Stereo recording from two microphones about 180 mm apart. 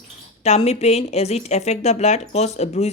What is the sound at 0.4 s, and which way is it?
Speech, 35° left (ahead or behind).